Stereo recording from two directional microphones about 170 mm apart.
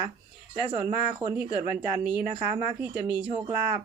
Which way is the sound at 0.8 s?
25° right (ahead or behind).